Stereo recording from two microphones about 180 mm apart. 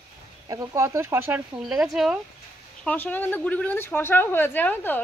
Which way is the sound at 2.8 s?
10° left (ahead or behind).